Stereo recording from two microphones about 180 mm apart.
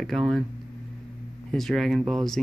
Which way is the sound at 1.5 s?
Centre (ahead or behind).